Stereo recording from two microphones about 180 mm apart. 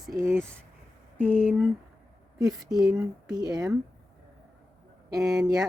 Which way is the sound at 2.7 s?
15° right (ahead or behind).